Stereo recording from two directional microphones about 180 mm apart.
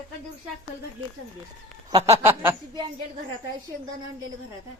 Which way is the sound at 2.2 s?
10° right (ahead or behind).